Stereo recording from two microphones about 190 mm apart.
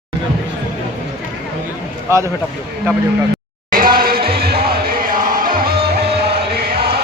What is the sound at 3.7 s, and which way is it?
Music, 45° right (ahead or behind).